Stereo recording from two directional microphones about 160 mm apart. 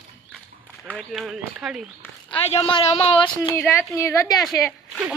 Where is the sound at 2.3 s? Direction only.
40° left (ahead or behind).